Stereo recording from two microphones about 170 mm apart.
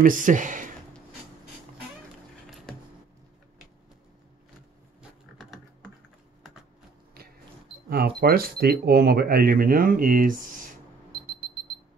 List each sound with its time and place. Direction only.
0.0 s speech: 50° right (ahead or behind)
2.4 s a sound: centre (ahead or behind)
7.9 s speech: 65° right (ahead or behind)